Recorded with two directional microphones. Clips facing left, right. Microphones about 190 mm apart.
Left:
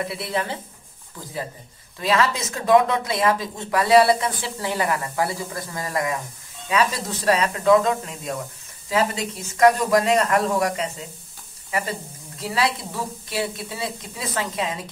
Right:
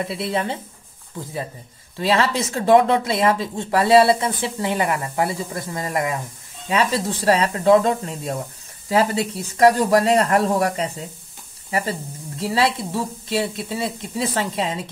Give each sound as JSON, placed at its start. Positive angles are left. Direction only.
{"t": 0.0, "sound": "speech", "side_deg": -25}
{"t": 12.4, "sound": "speech", "side_deg": -30}